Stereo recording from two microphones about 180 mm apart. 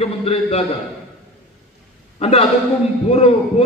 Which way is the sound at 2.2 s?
35° left (ahead or behind).